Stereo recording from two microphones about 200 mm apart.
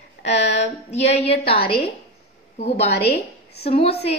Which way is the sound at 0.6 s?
35° left (ahead or behind).